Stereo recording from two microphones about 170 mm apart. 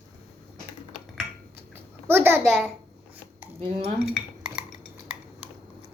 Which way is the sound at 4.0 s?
Centre (ahead or behind).